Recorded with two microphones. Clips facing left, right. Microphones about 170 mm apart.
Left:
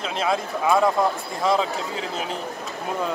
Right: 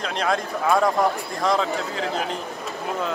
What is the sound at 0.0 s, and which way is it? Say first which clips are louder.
Speech: even; 5° left (ahead or behind).